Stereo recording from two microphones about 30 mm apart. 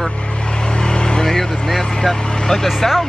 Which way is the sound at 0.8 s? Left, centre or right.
Left.